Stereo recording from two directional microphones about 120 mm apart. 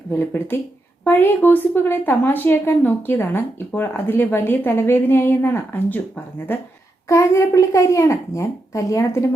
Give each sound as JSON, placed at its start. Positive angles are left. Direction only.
{"t": 0.1, "sound": "a woman's voice", "side_deg": 15}